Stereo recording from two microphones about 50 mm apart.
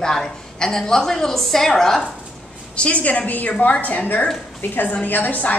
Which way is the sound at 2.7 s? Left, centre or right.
Left.